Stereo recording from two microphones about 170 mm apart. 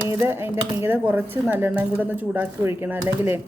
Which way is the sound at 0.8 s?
10° right (ahead or behind).